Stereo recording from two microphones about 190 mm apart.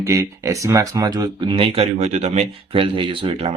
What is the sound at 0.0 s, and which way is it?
Speech, 15° right (ahead or behind).